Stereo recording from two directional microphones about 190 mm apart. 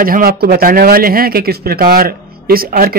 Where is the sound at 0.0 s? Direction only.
50° right (ahead or behind).